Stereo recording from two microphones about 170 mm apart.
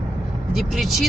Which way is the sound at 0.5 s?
Centre (ahead or behind).